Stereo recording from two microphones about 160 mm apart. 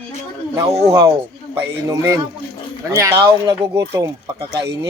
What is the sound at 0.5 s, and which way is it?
Speech, 20° right (ahead or behind).